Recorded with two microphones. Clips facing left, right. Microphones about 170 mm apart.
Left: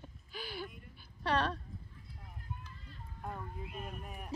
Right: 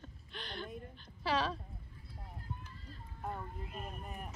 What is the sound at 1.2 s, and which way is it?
Dog, centre (ahead or behind).